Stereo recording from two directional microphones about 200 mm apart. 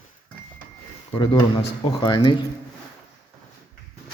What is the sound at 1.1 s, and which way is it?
Speech, 25° left (ahead or behind).